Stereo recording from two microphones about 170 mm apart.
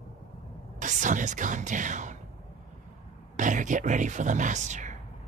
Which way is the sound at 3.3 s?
50° right (ahead or behind).